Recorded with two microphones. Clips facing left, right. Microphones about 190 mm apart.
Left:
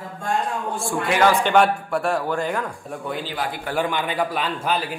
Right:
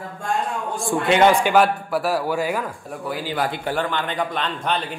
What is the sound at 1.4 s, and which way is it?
Speech, 5° right (ahead or behind).